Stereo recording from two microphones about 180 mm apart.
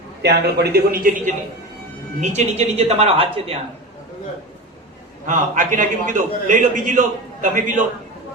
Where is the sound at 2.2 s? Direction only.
40° right (ahead or behind).